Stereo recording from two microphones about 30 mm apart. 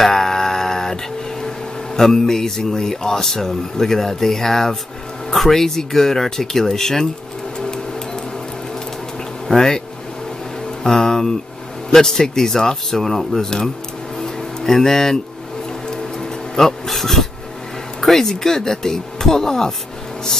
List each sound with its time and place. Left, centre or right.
0.0 s a sound: centre
2.0 s speech: centre
7.5 s a sound: left
9.5 s speech: centre
10.8 s speech: centre
14.1 s music: left
14.7 s speech: centre
15.9 s music: left
18.0 s speech: centre